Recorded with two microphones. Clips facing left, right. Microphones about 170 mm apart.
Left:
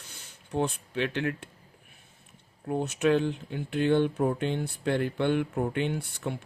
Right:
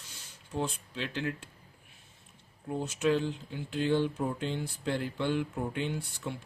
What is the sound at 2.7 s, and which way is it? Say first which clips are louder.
A man's voice: left 4 dB; 60° left (ahead or behind).